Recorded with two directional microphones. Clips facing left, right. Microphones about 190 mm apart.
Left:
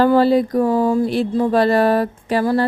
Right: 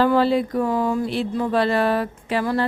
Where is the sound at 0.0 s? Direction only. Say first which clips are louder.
Left 4 dB; 40° left (ahead or behind).